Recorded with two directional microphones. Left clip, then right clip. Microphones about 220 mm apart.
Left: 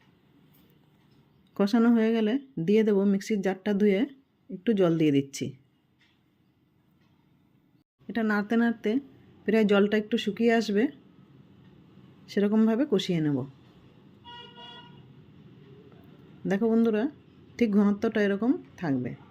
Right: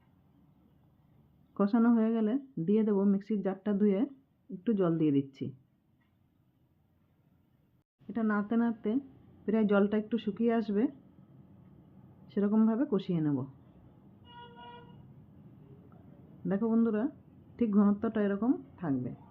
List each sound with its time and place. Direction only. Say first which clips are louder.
1.5 s speech: left 4 dB; 15° left (ahead or behind)
8.0 s speech: left 5 dB; 20° left (ahead or behind)
12.2 s speech: left 5 dB; 15° left (ahead or behind)
16.5 s speech: left 6 dB; 20° left (ahead or behind)